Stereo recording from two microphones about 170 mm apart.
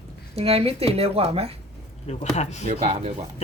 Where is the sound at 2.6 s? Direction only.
45° right (ahead or behind).